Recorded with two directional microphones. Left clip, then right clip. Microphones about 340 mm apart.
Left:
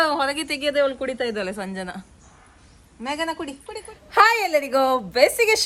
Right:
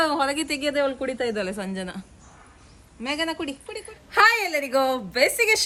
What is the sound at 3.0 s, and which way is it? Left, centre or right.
A woman's voice, centre.